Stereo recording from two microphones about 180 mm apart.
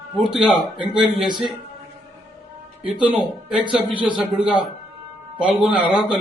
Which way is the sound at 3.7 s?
5° right (ahead or behind).